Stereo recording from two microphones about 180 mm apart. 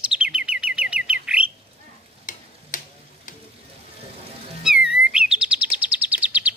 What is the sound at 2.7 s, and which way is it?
Tick-tock, 45° left (ahead or behind).